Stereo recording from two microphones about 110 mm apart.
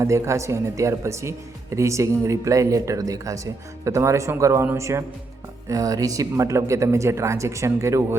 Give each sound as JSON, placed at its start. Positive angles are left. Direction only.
{"t": 0.0, "sound": "speech", "side_deg": -25}